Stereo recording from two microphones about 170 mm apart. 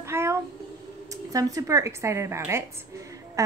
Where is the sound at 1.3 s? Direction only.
20° right (ahead or behind).